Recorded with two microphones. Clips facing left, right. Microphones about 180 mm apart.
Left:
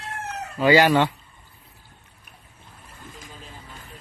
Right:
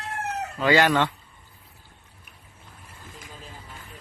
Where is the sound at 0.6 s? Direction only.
10° left (ahead or behind).